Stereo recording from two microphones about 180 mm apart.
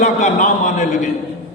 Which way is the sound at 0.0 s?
45° left (ahead or behind).